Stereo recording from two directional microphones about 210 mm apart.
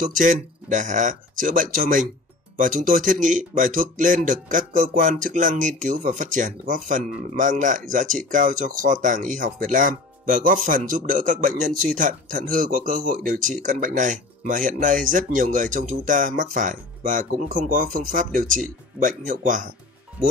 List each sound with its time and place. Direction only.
0.0 s speech: 40° right (ahead or behind)